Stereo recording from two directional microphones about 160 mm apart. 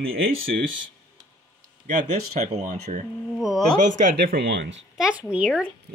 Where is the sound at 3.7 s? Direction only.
50° right (ahead or behind).